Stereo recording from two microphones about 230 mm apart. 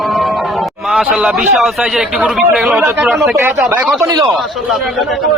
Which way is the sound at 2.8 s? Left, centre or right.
Centre.